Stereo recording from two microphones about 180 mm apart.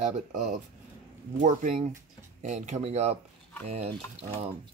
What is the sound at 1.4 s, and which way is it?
Speech, 45° right (ahead or behind).